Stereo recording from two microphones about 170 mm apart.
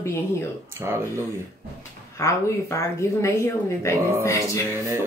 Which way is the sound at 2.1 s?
20° left (ahead or behind).